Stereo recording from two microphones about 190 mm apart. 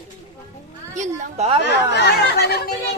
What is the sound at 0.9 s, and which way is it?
Speech, 35° right (ahead or behind).